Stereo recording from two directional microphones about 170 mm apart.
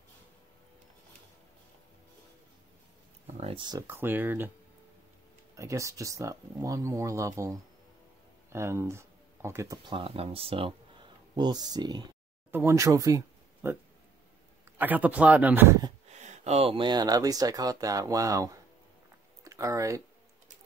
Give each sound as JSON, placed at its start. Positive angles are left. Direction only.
{"t": 3.3, "sound": "a sound", "side_deg": -40}
{"t": 3.8, "sound": "speech", "side_deg": -15}
{"t": 5.6, "sound": "speech", "side_deg": -20}
{"t": 9.8, "sound": "speech", "side_deg": -30}
{"t": 12.4, "sound": "speech", "side_deg": -15}
{"t": 14.8, "sound": "speech", "side_deg": -10}
{"t": 16.1, "sound": "speech", "side_deg": -40}